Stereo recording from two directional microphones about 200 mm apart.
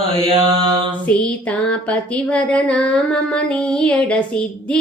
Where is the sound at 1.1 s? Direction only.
5° left (ahead or behind).